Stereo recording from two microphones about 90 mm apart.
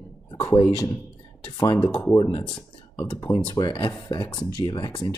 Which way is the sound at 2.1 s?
60° left (ahead or behind).